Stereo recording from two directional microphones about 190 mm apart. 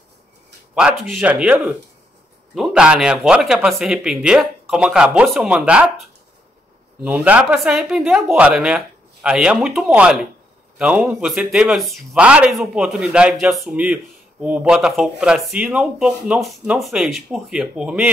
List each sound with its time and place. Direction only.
0.7 s speech: centre (ahead or behind)